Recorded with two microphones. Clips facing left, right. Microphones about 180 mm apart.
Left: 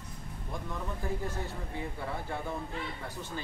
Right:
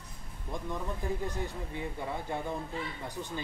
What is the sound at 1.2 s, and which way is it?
Speech, 15° right (ahead or behind).